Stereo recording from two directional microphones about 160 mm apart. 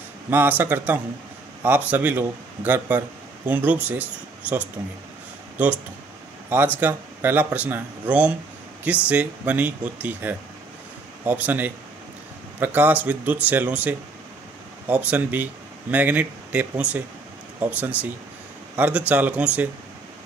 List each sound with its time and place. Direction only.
0.3 s speech: 10° right (ahead or behind)
6.8 s speech: 10° right (ahead or behind)